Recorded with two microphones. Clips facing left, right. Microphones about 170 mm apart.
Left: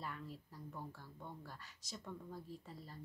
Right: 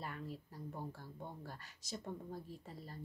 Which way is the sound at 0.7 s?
35° right (ahead or behind).